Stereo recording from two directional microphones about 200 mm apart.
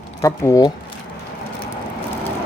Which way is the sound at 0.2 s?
15° left (ahead or behind).